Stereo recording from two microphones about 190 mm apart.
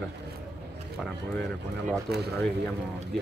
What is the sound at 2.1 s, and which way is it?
Speech, 60° right (ahead or behind).